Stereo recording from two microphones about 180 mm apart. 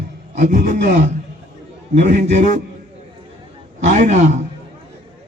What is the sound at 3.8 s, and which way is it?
Speech, 40° right (ahead or behind).